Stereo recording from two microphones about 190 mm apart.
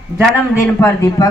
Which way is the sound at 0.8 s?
15° left (ahead or behind).